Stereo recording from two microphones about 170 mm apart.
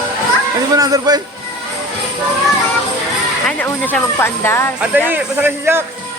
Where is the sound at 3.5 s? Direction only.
10° left (ahead or behind).